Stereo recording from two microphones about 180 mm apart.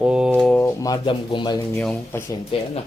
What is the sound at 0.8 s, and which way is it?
Speech, 25° left (ahead or behind).